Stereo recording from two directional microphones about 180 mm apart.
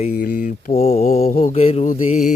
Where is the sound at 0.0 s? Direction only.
50° left (ahead or behind).